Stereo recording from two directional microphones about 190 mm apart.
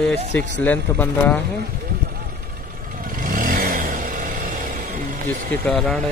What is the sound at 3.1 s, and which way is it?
Vehicle, 45° right (ahead or behind).